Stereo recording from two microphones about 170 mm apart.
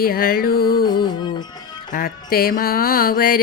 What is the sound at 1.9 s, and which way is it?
Music, 55° left (ahead or behind).